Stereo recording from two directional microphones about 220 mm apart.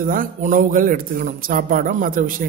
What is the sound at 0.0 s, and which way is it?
A man's voice, 40° right (ahead or behind).